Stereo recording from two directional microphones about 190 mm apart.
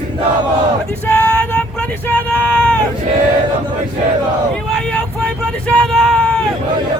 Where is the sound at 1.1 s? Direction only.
10° left (ahead or behind).